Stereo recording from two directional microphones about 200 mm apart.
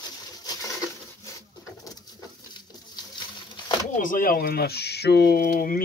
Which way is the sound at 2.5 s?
20° left (ahead or behind).